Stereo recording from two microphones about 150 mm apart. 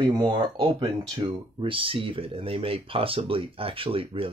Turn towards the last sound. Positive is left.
turn(degrees=-35)  # may be behind; listen again after turning